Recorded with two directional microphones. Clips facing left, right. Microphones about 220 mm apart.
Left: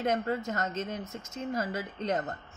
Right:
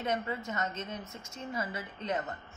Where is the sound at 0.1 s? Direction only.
45° left (ahead or behind).